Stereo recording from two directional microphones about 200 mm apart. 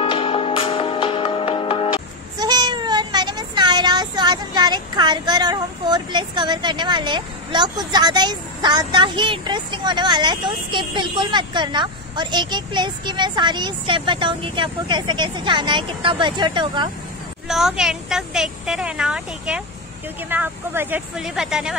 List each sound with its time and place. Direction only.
0.0 s music: 25° left (ahead or behind)
2.3 s speech: 20° right (ahead or behind)
17.5 s a woman's voice: centre (ahead or behind)